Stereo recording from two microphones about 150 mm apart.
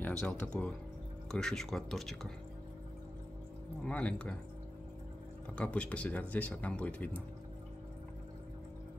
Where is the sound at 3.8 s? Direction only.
10° left (ahead or behind).